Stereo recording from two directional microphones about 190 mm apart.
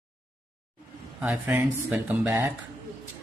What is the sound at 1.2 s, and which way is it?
Speech, 10° right (ahead or behind).